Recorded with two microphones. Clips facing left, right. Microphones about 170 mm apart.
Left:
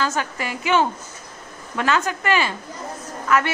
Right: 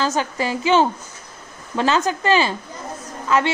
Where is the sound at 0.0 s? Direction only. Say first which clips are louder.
Right 3 dB; 30° right (ahead or behind).